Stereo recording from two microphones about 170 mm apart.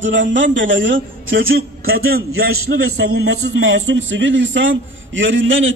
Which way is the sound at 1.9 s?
65° right (ahead or behind).